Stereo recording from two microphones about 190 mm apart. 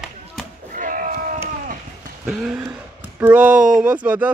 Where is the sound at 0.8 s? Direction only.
45° right (ahead or behind).